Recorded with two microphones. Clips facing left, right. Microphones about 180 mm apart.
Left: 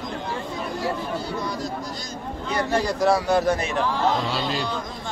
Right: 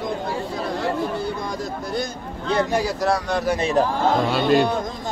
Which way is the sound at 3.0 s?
Centre (ahead or behind).